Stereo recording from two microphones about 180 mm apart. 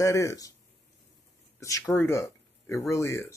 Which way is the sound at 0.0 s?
15° left (ahead or behind).